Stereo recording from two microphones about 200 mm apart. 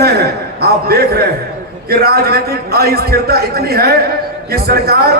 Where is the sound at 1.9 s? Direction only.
50° right (ahead or behind).